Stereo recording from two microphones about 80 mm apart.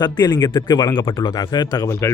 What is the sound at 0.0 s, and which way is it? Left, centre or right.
Speech, left.